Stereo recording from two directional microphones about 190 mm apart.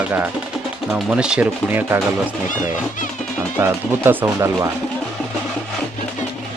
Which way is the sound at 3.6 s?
10° right (ahead or behind).